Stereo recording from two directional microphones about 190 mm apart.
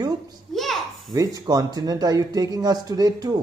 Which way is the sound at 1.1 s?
20° right (ahead or behind).